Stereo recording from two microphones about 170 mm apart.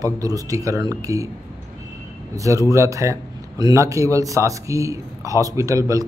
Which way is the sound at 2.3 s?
20° right (ahead or behind).